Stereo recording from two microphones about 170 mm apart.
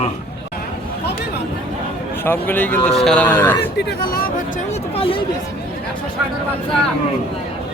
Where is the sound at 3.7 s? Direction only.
75° left (ahead or behind).